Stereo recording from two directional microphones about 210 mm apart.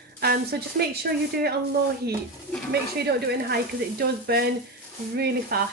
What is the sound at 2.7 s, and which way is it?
Speech, 50° right (ahead or behind).